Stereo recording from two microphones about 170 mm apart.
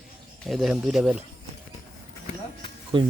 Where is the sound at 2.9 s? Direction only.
30° right (ahead or behind).